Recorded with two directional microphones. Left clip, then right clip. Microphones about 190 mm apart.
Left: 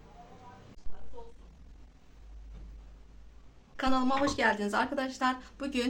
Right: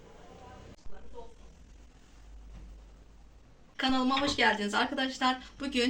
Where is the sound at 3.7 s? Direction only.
35° left (ahead or behind).